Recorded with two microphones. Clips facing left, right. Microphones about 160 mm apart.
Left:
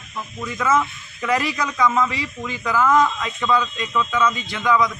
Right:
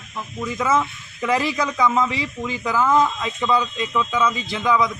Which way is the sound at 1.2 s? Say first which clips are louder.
Right 1 dB; 25° right (ahead or behind).